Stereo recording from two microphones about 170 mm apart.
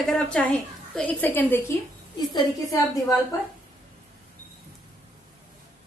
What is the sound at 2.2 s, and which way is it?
Speech, 25° left (ahead or behind).